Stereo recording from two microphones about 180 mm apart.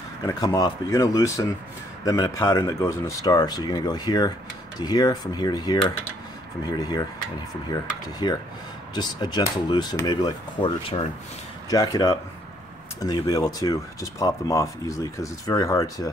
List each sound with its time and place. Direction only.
0.2 s speech: 20° left (ahead or behind)
6.8 s speech: 20° left (ahead or behind)
8.2 s speech: 25° left (ahead or behind)